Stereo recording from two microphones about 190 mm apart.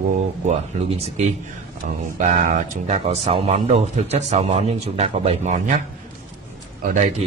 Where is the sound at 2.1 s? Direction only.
40° right (ahead or behind).